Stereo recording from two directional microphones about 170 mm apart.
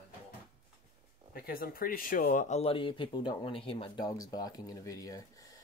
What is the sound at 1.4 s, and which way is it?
Speech, 60° left (ahead or behind).